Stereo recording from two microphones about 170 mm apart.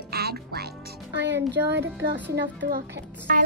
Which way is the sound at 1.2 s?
90° right.